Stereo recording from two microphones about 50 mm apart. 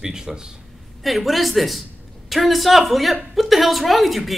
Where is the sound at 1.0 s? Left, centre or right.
Centre.